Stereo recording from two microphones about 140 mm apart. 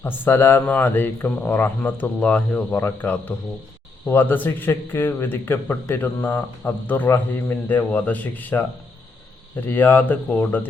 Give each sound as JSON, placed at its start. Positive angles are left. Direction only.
{"t": 0.0, "sound": "speech", "side_deg": 15}
{"t": 9.6, "sound": "speech", "side_deg": 15}